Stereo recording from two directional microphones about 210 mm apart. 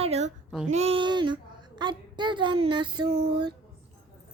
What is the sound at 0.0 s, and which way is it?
Female singing, 30° right (ahead or behind).